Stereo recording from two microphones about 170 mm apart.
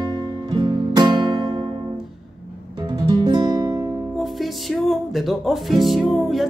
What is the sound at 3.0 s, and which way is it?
Music, 25° right (ahead or behind).